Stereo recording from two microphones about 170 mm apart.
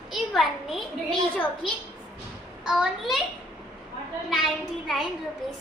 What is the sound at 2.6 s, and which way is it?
Speech, 5° right (ahead or behind).